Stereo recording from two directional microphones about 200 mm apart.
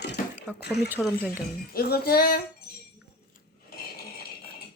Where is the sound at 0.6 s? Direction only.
55° left (ahead or behind).